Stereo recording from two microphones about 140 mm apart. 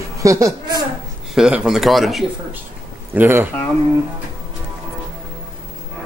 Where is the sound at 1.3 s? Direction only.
5° right (ahead or behind).